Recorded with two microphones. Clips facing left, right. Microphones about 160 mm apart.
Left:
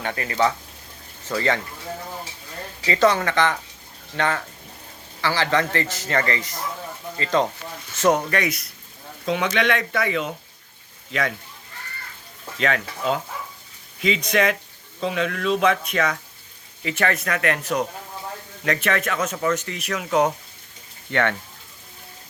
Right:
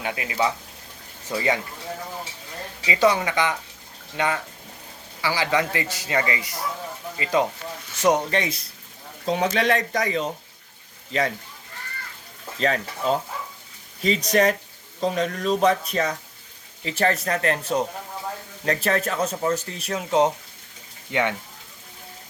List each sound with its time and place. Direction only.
0.0 s a man's voice: 10° right (ahead or behind)
2.8 s a man's voice: 10° right (ahead or behind); by 10.3 s 35° right (ahead or behind)
12.5 s speech: 35° right (ahead or behind)
21.1 s a man's voice: 10° right (ahead or behind)